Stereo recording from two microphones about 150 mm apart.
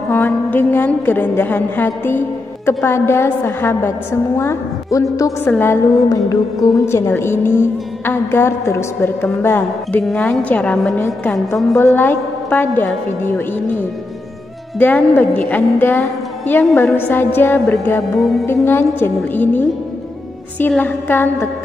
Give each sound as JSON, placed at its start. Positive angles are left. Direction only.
{"t": 0.1, "sound": "a woman's voice", "side_deg": 15}
{"t": 10.0, "sound": "a woman's voice", "side_deg": 5}
{"t": 11.8, "sound": "a woman's voice", "side_deg": 15}
{"t": 14.8, "sound": "a woman's voice", "side_deg": 10}